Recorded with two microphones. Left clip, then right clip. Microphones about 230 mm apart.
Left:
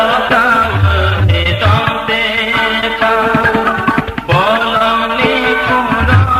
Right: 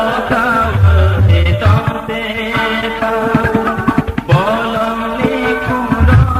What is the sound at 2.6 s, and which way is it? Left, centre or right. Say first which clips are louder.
Music: left 3 dB; left.